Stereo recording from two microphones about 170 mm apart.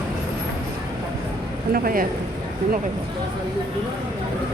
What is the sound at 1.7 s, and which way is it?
Speech, 55° right (ahead or behind).